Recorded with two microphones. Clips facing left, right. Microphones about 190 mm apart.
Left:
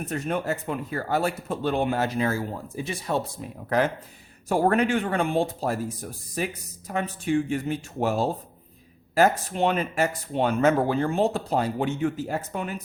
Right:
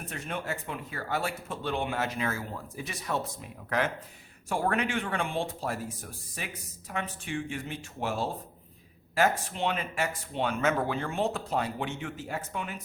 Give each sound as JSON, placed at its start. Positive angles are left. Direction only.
{"t": 0.1, "sound": "speech", "side_deg": 45}